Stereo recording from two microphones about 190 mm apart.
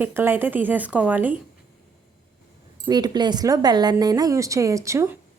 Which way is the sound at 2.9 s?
20° right (ahead or behind).